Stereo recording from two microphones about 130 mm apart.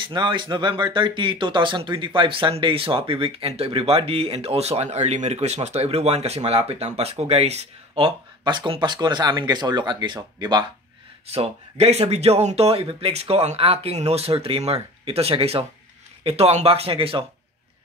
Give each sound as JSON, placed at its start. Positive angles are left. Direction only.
{"t": 0.0, "sound": "speech", "side_deg": -40}
{"t": 11.2, "sound": "speech", "side_deg": -55}